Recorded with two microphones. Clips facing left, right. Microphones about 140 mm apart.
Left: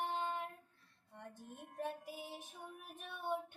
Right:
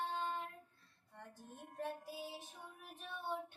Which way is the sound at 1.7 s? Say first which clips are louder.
Left 1 dB; 15° left (ahead or behind).